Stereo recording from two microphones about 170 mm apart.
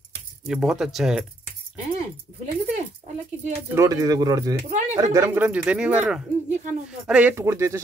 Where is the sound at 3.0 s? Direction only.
40° right (ahead or behind).